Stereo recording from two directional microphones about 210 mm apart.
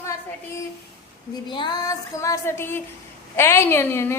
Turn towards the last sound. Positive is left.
turn(degrees=10)  # may be behind; listen again after turning